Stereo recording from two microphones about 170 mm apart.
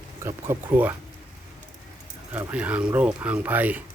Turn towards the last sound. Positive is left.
turn(degrees=-10)  # may be behind; listen again after turning